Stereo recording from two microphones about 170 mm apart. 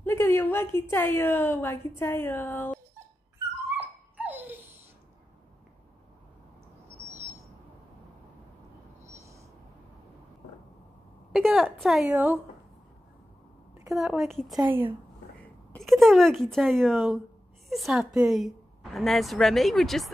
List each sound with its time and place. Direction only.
0.0 s a woman's voice: 15° left (ahead or behind)
3.7 s dog: 10° right (ahead or behind)
9.0 s owl: 15° right (ahead or behind)
11.3 s a woman's voice: centre (ahead or behind)
13.9 s a woman's voice: centre (ahead or behind)
14.6 s a woman's voice: 10° right (ahead or behind)
15.4 s a woman's voice: 5° left (ahead or behind)